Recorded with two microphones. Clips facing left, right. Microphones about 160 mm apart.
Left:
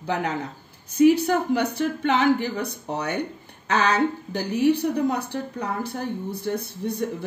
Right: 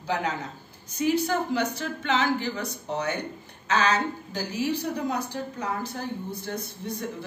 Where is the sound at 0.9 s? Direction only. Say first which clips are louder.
Left 7 dB; 55° left (ahead or behind).